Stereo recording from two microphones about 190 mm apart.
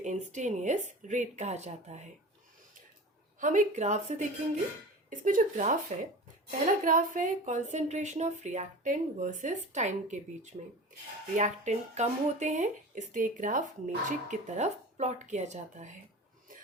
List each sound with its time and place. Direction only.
0.0 s speech: 40° right (ahead or behind)
3.4 s speech: 40° right (ahead or behind)